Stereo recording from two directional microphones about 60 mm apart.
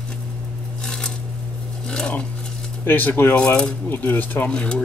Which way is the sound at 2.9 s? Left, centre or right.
Left.